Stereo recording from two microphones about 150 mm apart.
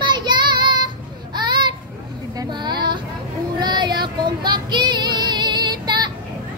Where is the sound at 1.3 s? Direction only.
30° right (ahead or behind).